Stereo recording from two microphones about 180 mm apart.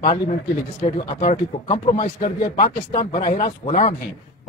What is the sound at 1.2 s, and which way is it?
Speech, 35° left (ahead or behind).